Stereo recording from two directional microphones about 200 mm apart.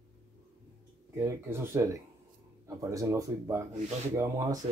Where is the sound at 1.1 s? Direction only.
10° right (ahead or behind).